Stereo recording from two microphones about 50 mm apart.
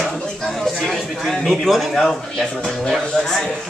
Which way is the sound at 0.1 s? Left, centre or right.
Centre.